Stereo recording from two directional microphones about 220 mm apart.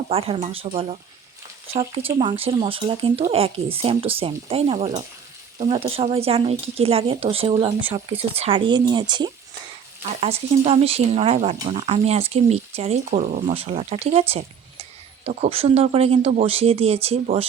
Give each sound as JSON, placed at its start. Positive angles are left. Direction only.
{"t": 0.1, "sound": "speech", "side_deg": -25}
{"t": 2.0, "sound": "speech", "side_deg": -25}